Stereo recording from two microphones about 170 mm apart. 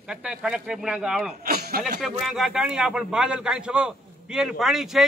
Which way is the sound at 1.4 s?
65° right (ahead or behind).